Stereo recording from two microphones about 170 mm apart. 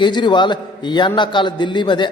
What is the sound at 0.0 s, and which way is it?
A man's voice, 25° left (ahead or behind).